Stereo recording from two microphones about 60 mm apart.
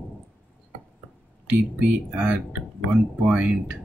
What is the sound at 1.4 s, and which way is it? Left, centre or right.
Speech, right.